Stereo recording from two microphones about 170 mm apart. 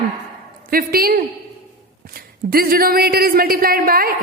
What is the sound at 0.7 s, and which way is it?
A man's voice, 60° right (ahead or behind).